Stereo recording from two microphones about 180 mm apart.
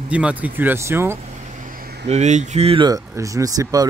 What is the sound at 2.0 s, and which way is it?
Speech, 40° right (ahead or behind).